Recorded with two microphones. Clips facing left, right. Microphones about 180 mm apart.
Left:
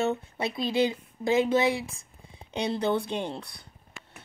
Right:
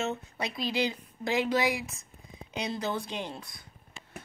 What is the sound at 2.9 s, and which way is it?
Speech, 60° left (ahead or behind).